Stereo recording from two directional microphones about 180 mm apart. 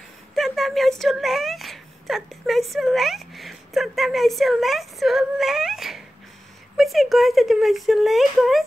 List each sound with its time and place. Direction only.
0.4 s speech: centre (ahead or behind)